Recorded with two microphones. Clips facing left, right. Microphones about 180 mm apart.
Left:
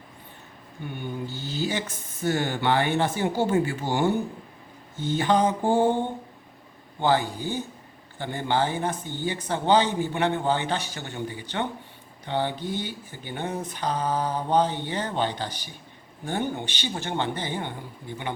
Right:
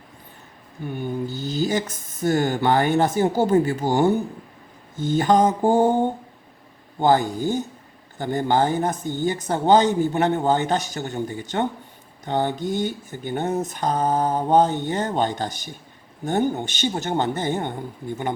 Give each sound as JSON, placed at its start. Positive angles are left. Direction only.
{"t": 0.9, "sound": "speech", "side_deg": -40}